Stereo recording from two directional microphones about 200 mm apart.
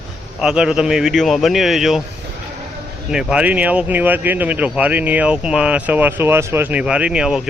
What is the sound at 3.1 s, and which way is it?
Speech, 5° right (ahead or behind).